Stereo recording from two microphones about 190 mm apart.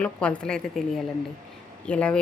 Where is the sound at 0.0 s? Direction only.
5° left (ahead or behind).